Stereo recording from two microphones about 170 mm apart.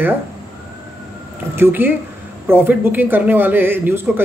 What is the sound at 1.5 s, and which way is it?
Speech, 10° right (ahead or behind).